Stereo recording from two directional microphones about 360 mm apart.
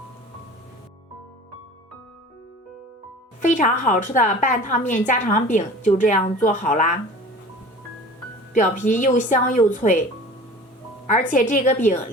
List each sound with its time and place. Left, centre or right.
3.4 s a woman's voice: left
8.5 s a woman's voice: left
11.0 s a woman's voice: centre